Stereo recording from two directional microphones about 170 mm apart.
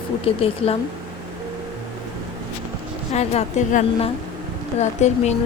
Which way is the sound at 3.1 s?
40° left (ahead or behind).